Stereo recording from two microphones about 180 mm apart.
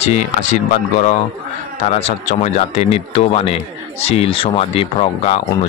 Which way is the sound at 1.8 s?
35° left (ahead or behind).